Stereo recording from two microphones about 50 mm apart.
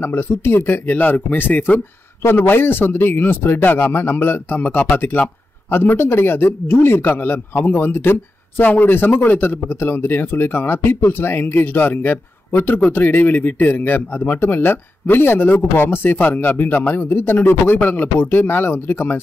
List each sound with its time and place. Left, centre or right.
0.0 s speech: left